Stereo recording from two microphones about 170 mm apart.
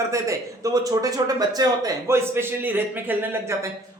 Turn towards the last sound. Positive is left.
turn(degrees=-15)  # may be behind; listen again after turning